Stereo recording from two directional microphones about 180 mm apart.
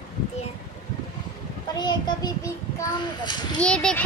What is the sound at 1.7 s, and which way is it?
A child's voice, 25° left (ahead or behind).